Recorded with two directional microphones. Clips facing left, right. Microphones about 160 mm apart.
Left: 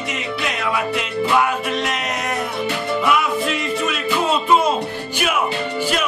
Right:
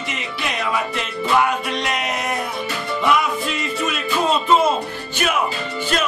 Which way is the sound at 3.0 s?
5° left (ahead or behind).